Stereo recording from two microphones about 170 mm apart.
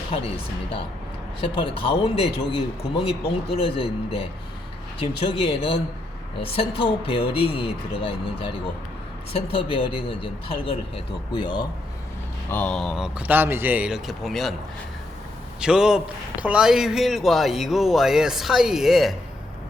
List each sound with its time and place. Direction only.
0.1 s a man's voice: 35° left (ahead or behind)
1.4 s a man's voice: 30° left (ahead or behind)
12.5 s speech: 10° left (ahead or behind)
15.6 s speech: 5° right (ahead or behind)